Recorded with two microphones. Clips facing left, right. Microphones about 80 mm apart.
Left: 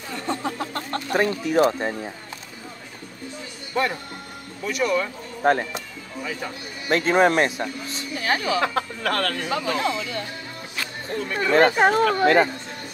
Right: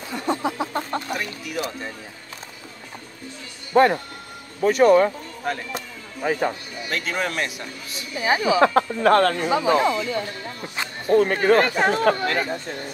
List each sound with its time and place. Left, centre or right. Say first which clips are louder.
0.1 s a sound: right 3 dB; centre
1.1 s speech: left 8 dB; left
3.7 s speech: right 8 dB; right
5.4 s speech: left 8 dB; left
6.9 s speech: left 8 dB; left
8.2 s a sound: right 4 dB; centre
8.5 s speech: right 6 dB; right
9.5 s a sound: right 5 dB; right
11.1 s speech: right 13 dB; right
11.5 s speech: left 4 dB; left
11.9 s speech: even; right
12.2 s speech: left 7 dB; left